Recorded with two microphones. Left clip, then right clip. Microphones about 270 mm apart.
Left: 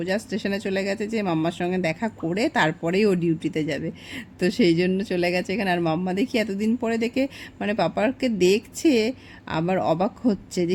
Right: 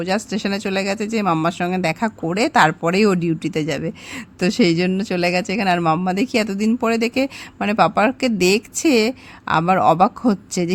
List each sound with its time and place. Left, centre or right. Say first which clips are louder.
0.0 s speech: right 4 dB; right